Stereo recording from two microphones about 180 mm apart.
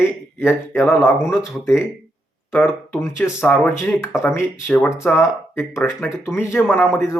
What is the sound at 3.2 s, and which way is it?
Speech, 15° left (ahead or behind).